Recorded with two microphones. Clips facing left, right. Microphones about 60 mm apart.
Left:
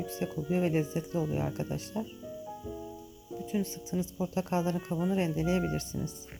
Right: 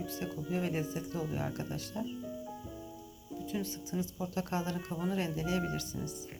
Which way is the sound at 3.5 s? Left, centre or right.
Centre.